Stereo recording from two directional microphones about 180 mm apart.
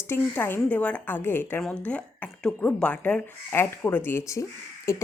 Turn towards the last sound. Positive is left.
turn(degrees=15)  # may be behind; listen again after turning